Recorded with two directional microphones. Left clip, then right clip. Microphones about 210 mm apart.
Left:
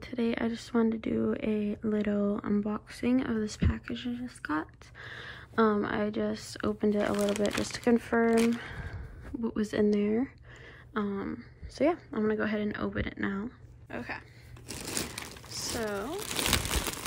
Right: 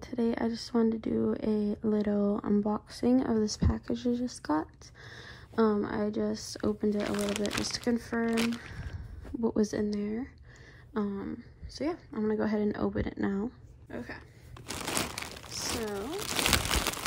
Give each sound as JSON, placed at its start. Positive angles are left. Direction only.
{"t": 0.0, "sound": "speech", "side_deg": -15}
{"t": 7.0, "sound": "speech", "side_deg": 0}
{"t": 9.3, "sound": "speech", "side_deg": -15}
{"t": 10.9, "sound": "speech", "side_deg": -15}
{"t": 14.7, "sound": "crumpling", "side_deg": 0}
{"t": 15.8, "sound": "speech", "side_deg": -15}
{"t": 16.1, "sound": "a sound", "side_deg": 0}